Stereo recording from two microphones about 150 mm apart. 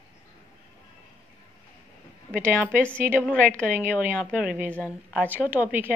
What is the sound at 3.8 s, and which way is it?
Speech, 15° right (ahead or behind).